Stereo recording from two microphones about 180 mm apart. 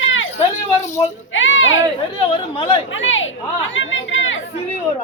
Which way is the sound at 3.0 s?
90° left.